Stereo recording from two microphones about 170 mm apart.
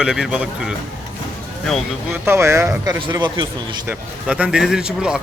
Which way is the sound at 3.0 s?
25° right (ahead or behind).